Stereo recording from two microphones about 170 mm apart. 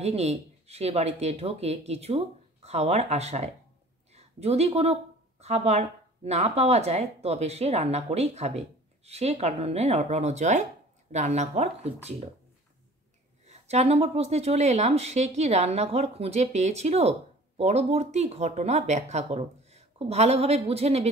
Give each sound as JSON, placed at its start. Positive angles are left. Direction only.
{"t": 0.0, "sound": "speech", "side_deg": -40}
{"t": 13.5, "sound": "speech", "side_deg": -40}